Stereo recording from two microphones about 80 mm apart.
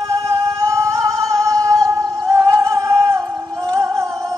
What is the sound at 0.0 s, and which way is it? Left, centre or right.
Music, right.